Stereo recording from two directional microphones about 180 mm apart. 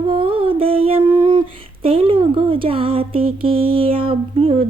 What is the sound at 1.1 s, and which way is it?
Mantra, 30° right (ahead or behind).